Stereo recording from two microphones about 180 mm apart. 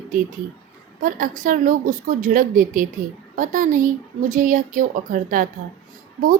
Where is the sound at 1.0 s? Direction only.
45° right (ahead or behind).